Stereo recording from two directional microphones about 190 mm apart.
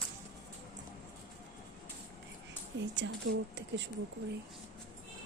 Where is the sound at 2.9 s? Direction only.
65° right (ahead or behind).